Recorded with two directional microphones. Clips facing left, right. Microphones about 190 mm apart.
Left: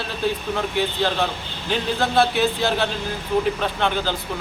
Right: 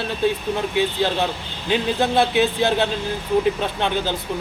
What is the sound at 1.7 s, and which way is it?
A man's voice, 20° right (ahead or behind).